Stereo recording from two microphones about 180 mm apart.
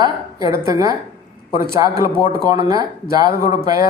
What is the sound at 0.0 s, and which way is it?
Speech, 20° right (ahead or behind).